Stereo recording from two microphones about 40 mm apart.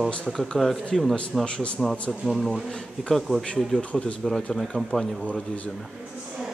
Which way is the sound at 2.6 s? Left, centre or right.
Centre.